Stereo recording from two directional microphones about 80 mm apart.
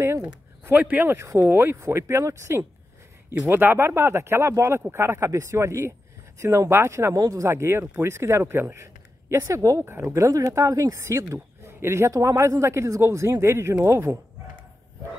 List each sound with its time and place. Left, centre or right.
0.0 s a sound: right
0.7 s speech: right
9.8 s speech: right
10.1 s speech: right